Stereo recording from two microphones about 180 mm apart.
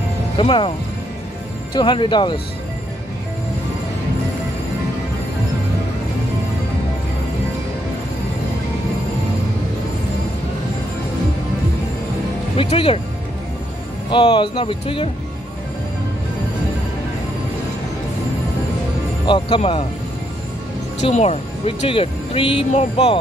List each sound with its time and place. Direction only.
0.4 s speech: 30° left (ahead or behind)
12.5 s speech: 30° left (ahead or behind)
14.1 s speech: 30° left (ahead or behind)
19.2 s speech: 30° left (ahead or behind)
21.0 s speech: 40° left (ahead or behind)